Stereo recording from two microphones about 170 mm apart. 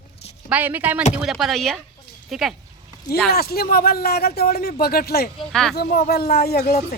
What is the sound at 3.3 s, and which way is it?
Speech, 65° left (ahead or behind).